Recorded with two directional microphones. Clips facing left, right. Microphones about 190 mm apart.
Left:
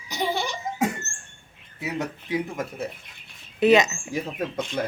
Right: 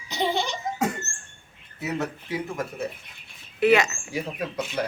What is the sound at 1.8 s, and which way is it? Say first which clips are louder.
Speech: right 1 dB; 20° left (ahead or behind).